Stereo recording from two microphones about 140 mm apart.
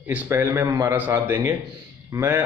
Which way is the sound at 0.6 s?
25° right (ahead or behind).